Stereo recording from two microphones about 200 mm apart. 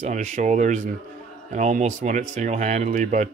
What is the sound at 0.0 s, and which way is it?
Speech, 35° right (ahead or behind).